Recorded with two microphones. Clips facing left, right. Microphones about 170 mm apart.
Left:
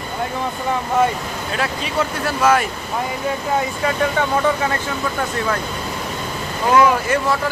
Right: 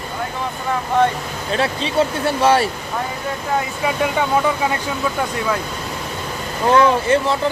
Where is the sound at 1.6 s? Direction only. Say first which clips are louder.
Right 4 dB; 25° right (ahead or behind).